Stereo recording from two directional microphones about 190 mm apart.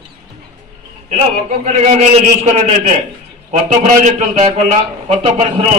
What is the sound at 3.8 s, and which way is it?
A man's voice, 40° right (ahead or behind).